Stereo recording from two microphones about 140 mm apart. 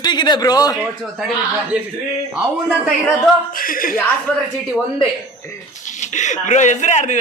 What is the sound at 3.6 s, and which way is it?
Speech, 90° left.